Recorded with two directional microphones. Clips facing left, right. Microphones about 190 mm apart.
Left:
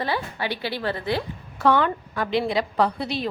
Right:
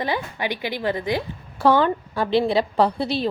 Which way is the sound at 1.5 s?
30° right (ahead or behind).